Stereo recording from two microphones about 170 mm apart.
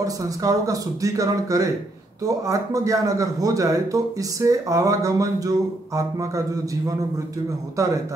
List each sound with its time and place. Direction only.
0.0 s a man's voice: 20° right (ahead or behind)
7.7 s a man's voice: 20° right (ahead or behind)